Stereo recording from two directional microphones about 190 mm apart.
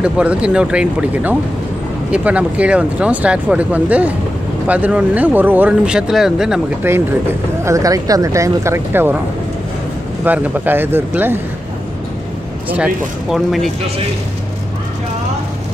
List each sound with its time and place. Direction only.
0.0 s speech: 5° right (ahead or behind)
7.6 s speech: 15° right (ahead or behind)
10.2 s speech: 10° right (ahead or behind)
12.6 s speech: 5° right (ahead or behind)